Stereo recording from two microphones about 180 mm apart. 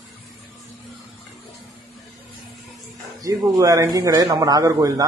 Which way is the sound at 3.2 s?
20° right (ahead or behind).